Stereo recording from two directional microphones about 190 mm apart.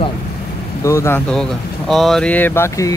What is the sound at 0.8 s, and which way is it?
Speech, 15° left (ahead or behind).